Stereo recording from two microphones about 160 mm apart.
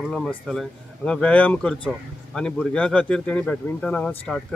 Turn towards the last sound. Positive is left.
turn(degrees=10)  # may be behind; listen again after turning